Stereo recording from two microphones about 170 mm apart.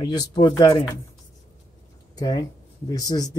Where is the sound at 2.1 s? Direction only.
20° left (ahead or behind).